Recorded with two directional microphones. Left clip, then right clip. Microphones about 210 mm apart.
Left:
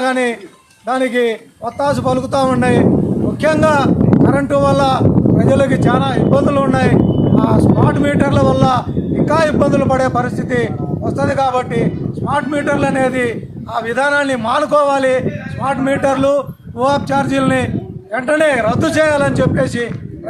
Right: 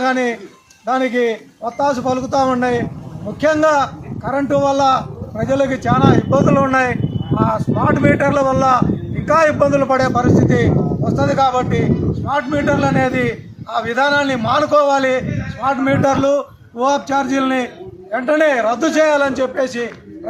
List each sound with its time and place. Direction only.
0.0 s a man's voice: 15° left (ahead or behind)